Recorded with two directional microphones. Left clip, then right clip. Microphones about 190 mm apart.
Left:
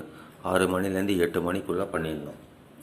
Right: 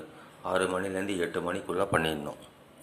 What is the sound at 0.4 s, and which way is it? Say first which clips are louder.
Speech: left 4 dB; 10° left (ahead or behind).